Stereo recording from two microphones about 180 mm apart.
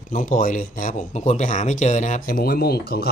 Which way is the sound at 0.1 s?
45° left (ahead or behind).